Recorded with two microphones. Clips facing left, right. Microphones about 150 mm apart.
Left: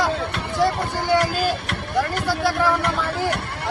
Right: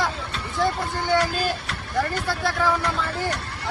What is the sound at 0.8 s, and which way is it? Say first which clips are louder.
Vehicle: left 2 dB; 60° left (ahead or behind).